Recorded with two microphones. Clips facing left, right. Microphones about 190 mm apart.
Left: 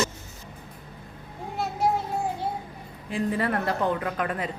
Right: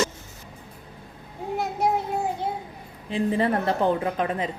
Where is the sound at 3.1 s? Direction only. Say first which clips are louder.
Right 3 dB; 25° right (ahead or behind).